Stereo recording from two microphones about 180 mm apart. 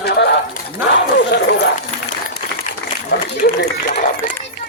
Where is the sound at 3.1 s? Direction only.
65° left (ahead or behind).